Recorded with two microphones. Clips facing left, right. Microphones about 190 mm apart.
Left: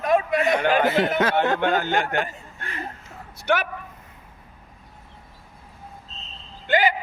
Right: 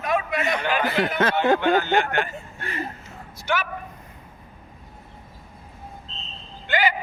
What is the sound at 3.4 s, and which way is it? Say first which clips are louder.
Speech: left 3 dB; 60° left (ahead or behind).